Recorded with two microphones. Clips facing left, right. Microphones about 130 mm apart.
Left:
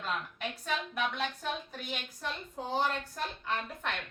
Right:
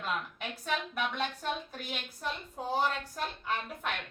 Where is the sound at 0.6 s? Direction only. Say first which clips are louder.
Right 1 dB; centre (ahead or behind).